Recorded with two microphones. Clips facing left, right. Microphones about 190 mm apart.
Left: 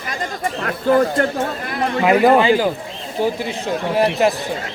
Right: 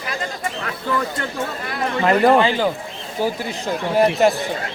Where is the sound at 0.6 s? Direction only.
50° left (ahead or behind).